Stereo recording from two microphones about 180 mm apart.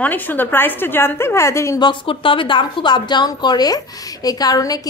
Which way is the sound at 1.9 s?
30° left (ahead or behind).